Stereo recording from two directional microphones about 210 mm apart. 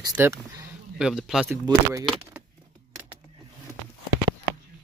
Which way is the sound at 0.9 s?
Centre (ahead or behind).